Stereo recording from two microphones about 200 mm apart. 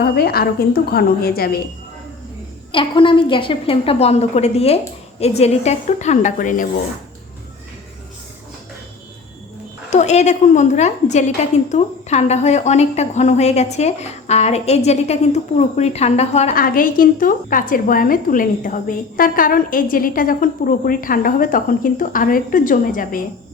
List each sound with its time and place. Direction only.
0.0 s a woman's voice: 50° left (ahead or behind)
2.7 s a woman's voice: 25° left (ahead or behind)
9.9 s a woman's voice: 35° left (ahead or behind)
16.6 s a woman's voice: 45° left (ahead or behind)